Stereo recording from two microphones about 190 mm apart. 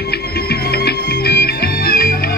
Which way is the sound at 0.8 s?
55° left (ahead or behind).